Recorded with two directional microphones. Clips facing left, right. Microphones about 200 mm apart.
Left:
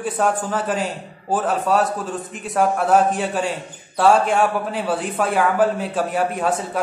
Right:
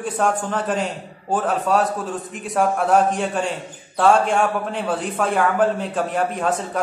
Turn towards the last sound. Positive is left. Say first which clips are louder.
# left 1 dB
turn(degrees=5)  # may be behind; listen again after turning